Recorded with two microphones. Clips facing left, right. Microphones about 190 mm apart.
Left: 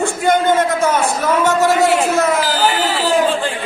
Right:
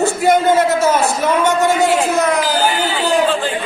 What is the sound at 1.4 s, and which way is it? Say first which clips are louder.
A man's voice: left 2 dB; centre (ahead or behind).